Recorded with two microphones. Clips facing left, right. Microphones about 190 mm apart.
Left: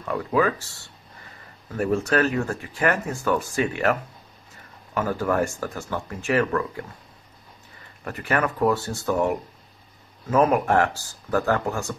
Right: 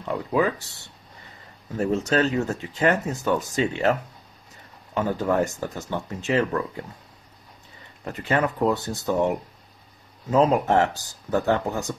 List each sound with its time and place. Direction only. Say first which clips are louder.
0.1 s speech: left 1 dB; 20° right (ahead or behind)
8.0 s speech: right 1 dB; 20° right (ahead or behind)